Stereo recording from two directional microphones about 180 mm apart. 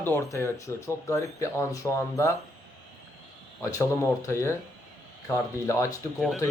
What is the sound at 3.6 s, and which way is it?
Speech, 15° left (ahead or behind).